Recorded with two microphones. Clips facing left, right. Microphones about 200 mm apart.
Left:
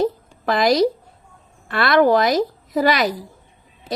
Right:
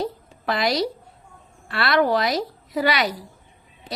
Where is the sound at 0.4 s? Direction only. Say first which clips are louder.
Left 6 dB; 40° left (ahead or behind).